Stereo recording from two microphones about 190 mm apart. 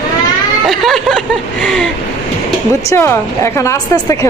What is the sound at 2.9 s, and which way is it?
A woman's voice, 15° left (ahead or behind).